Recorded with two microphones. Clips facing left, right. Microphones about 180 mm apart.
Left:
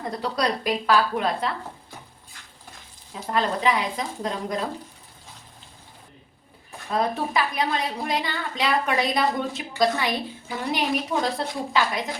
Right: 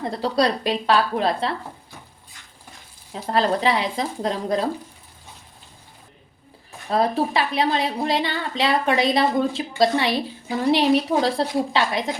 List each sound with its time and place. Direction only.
0.1 s a woman's voice: 30° right (ahead or behind)
3.1 s speech: 35° right (ahead or behind)
6.9 s a woman's voice: 30° right (ahead or behind)